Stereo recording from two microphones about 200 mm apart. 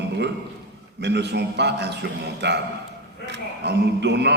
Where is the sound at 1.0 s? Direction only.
60° right (ahead or behind).